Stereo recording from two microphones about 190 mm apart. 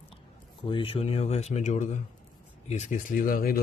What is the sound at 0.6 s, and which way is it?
A man's voice, 30° left (ahead or behind).